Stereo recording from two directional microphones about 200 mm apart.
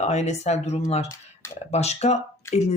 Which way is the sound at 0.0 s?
35° left (ahead or behind).